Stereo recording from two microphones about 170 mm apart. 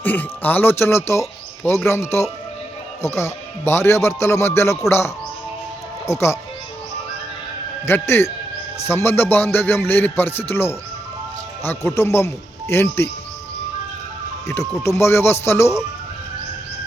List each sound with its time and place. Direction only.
0.0 s speech: 10° left (ahead or behind)
3.2 s speech: 15° left (ahead or behind)
7.9 s speech: 15° left (ahead or behind)
14.4 s speech: 15° left (ahead or behind)